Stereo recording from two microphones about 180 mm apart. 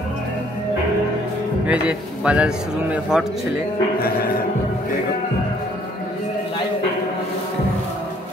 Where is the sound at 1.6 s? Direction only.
5° right (ahead or behind).